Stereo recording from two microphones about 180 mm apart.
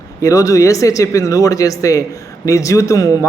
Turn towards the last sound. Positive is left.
turn(degrees=20)  # may be behind; listen again after turning